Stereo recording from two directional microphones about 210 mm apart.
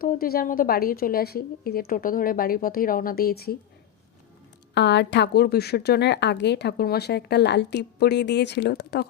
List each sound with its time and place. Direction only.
0.0 s a woman's voice: 45° left (ahead or behind)
4.7 s a woman's voice: 55° left (ahead or behind)